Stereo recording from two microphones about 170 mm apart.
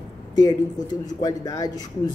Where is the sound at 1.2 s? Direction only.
20° left (ahead or behind).